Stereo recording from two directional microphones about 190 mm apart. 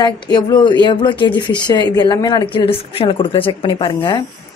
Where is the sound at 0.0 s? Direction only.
20° left (ahead or behind).